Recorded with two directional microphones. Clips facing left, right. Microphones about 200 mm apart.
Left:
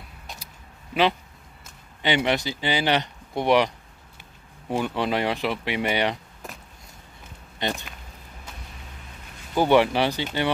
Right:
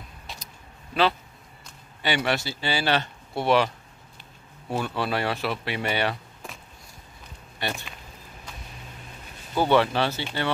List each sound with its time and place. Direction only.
2.0 s speech: 20° left (ahead or behind)
7.6 s speech: 20° left (ahead or behind)
9.6 s speech: 15° left (ahead or behind)